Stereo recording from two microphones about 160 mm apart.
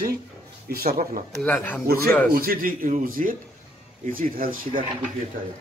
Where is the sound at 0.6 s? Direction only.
70° right (ahead or behind).